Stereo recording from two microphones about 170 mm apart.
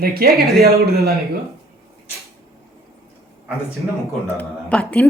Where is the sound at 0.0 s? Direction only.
65° right (ahead or behind).